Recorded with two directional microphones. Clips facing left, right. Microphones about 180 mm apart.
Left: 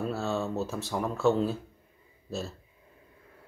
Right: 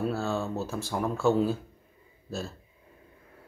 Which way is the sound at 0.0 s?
Centre (ahead or behind).